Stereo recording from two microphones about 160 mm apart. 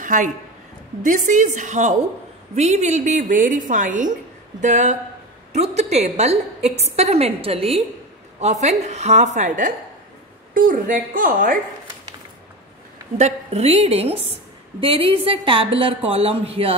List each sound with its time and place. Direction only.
0.0 s a woman's voice: 55° right (ahead or behind)
13.2 s a woman's voice: 40° right (ahead or behind)